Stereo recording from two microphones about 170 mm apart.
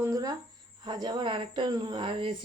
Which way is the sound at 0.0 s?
20° right (ahead or behind).